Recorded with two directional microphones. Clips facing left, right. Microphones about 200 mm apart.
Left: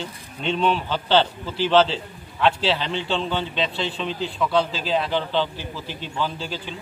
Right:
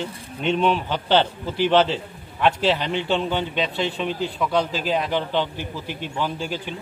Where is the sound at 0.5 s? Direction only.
15° right (ahead or behind).